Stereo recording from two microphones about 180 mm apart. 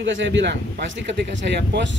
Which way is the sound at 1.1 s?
70° right (ahead or behind).